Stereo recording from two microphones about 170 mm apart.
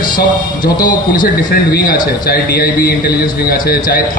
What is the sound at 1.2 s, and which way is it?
A man's voice, 65° left (ahead or behind).